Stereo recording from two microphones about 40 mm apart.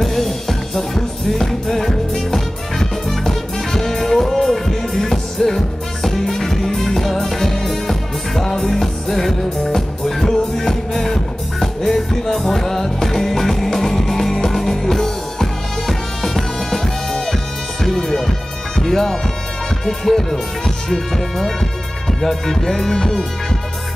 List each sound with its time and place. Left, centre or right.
0.0 s music: centre